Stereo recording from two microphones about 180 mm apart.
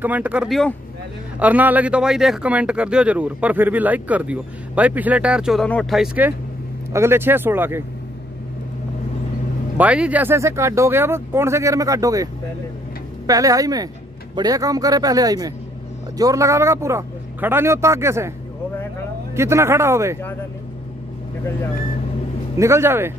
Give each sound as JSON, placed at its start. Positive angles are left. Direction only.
{"t": 0.0, "sound": "speech", "side_deg": -10}
{"t": 1.4, "sound": "speech", "side_deg": -10}
{"t": 9.8, "sound": "speech", "side_deg": -5}
{"t": 13.3, "sound": "a man's voice", "side_deg": -20}
{"t": 19.3, "sound": "speech", "side_deg": -15}
{"t": 22.6, "sound": "speech", "side_deg": -15}